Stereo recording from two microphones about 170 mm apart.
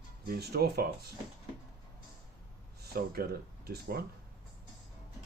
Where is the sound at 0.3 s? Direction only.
70° right (ahead or behind).